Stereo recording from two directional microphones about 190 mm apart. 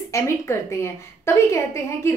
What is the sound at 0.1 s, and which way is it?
A woman's voice, 15° left (ahead or behind).